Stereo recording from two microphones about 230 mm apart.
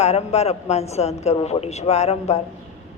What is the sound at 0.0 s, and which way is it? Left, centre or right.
Speech, left.